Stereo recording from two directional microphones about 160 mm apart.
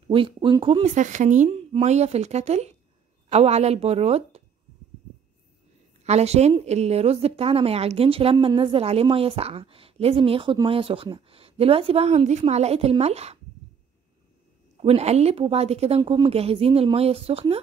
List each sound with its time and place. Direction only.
0.1 s speech: 35° right (ahead or behind)
0.8 s speech: 50° right (ahead or behind)
6.0 s speech: 40° right (ahead or behind)
14.8 s speech: 40° right (ahead or behind)